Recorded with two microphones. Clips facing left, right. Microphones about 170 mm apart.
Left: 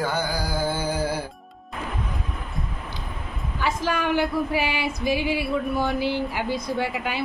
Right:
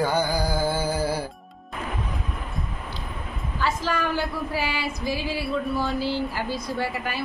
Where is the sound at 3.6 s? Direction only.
15° left (ahead or behind).